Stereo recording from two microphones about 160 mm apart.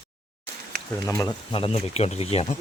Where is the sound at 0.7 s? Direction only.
80° right.